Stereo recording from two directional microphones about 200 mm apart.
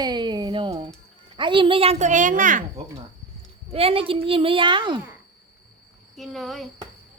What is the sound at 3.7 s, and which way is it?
Speech, 30° right (ahead or behind).